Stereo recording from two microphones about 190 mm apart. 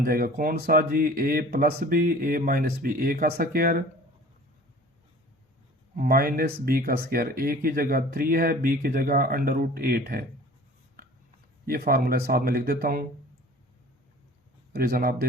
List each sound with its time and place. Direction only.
0.0 s speech: 50° right (ahead or behind)
6.0 s speech: 50° right (ahead or behind)
11.6 s speech: 50° right (ahead or behind)
14.7 s speech: 50° right (ahead or behind)